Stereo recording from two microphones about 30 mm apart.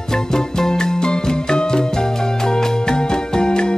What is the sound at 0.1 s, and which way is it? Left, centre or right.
Music, centre.